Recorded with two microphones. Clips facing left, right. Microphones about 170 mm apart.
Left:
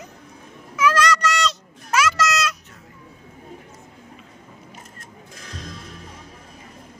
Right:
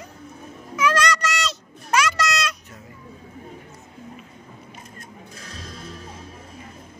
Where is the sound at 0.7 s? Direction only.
5° left (ahead or behind).